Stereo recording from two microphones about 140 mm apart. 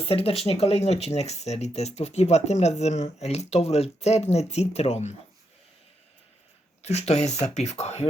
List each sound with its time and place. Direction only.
0.0 s speech: 45° left (ahead or behind)
6.8 s speech: 50° left (ahead or behind)